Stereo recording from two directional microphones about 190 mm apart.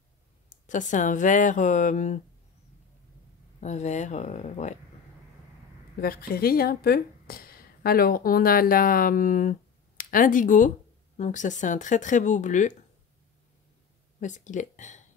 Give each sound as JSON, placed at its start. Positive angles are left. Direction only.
{"t": 0.7, "sound": "speech", "side_deg": 40}
{"t": 3.6, "sound": "speech", "side_deg": 40}
{"t": 5.9, "sound": "speech", "side_deg": 50}
{"t": 14.2, "sound": "speech", "side_deg": 40}